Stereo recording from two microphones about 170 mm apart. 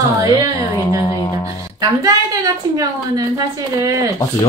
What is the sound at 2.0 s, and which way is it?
A woman's voice, 20° right (ahead or behind).